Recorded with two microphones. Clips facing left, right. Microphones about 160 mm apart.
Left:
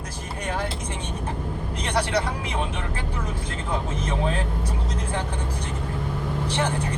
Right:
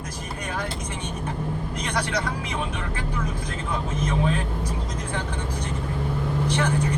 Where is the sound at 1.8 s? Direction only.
30° left (ahead or behind).